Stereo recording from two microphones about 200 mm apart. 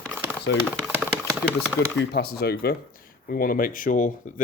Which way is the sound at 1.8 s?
60° left (ahead or behind).